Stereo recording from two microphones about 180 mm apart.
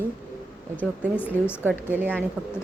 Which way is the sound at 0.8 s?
10° left (ahead or behind).